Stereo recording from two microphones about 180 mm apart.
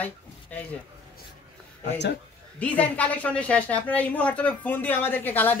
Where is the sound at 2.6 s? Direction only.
5° left (ahead or behind).